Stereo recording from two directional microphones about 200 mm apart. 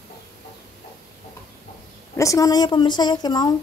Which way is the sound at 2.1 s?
15° left (ahead or behind).